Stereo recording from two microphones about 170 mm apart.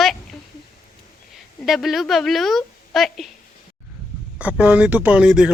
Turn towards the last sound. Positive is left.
turn(degrees=-5)  # may be behind; listen again after turning